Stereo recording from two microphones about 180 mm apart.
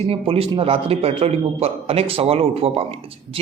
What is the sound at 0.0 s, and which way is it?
A man's voice, 35° right (ahead or behind).